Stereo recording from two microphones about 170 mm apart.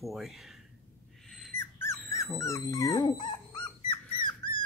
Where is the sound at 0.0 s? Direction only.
Centre (ahead or behind).